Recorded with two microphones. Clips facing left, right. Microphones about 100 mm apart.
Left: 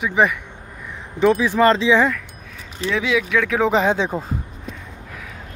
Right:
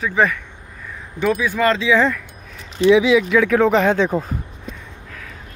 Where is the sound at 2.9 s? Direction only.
5° right (ahead or behind).